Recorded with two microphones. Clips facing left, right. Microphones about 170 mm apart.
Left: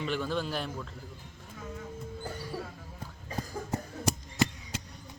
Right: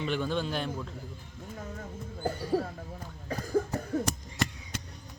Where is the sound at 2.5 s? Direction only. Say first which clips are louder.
Right 12 dB; 60° right (ahead or behind).